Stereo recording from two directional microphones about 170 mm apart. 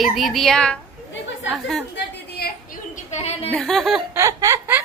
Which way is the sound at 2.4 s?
65° left (ahead or behind).